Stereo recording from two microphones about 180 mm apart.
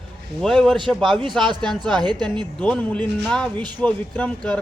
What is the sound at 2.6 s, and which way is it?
Speech, 10° left (ahead or behind).